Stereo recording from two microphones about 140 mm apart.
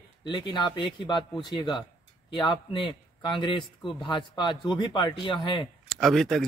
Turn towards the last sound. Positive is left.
turn(degrees=0)  # may be behind; listen again after turning